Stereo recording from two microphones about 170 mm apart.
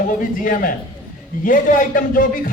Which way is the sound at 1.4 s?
55° left (ahead or behind).